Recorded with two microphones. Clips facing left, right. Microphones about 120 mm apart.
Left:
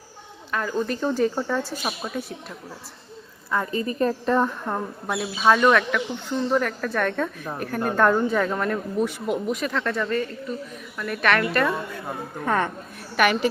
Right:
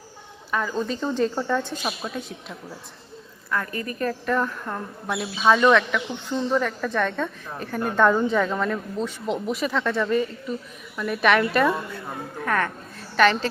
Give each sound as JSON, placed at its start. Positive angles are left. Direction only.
{"t": 0.7, "sound": "speech", "side_deg": 5}
{"t": 3.5, "sound": "a woman's voice", "side_deg": 20}
{"t": 5.0, "sound": "speech", "side_deg": 0}
{"t": 9.5, "sound": "speech", "side_deg": 0}
{"t": 12.5, "sound": "a woman's voice", "side_deg": 20}